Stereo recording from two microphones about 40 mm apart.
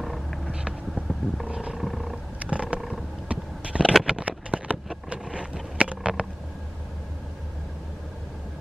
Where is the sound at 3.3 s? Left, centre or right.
Right.